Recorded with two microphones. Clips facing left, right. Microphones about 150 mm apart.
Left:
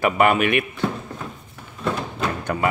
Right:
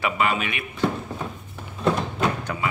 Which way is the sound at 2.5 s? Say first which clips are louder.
Left 5 dB; 50° left (ahead or behind).